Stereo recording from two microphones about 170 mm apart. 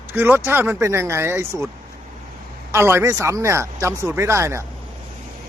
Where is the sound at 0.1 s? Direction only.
10° right (ahead or behind).